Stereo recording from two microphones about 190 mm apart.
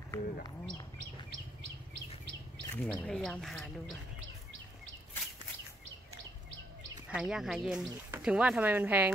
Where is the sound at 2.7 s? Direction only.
10° left (ahead or behind).